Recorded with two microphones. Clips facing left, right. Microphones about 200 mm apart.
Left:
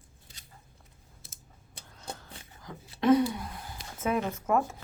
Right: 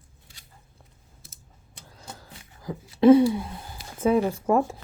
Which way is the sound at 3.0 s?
30° right (ahead or behind).